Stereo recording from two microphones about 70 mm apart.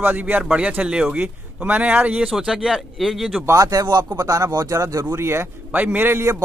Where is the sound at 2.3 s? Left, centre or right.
Centre.